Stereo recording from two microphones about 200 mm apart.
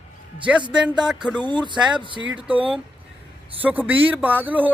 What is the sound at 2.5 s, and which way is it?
Speech, 5° right (ahead or behind).